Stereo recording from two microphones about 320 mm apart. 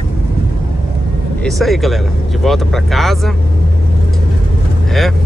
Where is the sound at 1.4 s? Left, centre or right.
Centre.